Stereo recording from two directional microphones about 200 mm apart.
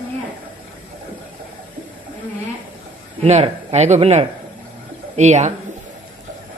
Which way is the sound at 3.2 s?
30° right (ahead or behind).